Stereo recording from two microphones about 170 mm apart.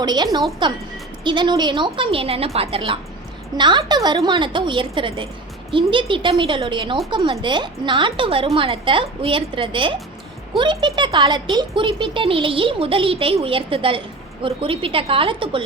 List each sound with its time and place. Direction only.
0.0 s a woman's voice: 25° right (ahead or behind)